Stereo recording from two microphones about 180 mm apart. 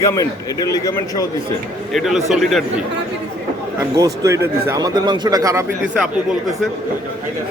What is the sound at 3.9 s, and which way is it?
Speech, 20° right (ahead or behind).